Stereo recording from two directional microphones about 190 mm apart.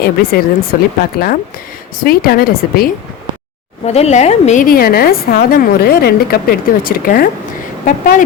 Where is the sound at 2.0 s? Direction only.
50° left (ahead or behind).